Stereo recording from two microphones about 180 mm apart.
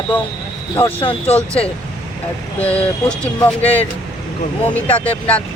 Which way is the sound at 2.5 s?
10° left (ahead or behind).